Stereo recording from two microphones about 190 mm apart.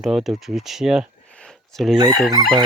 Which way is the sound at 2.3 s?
25° right (ahead or behind).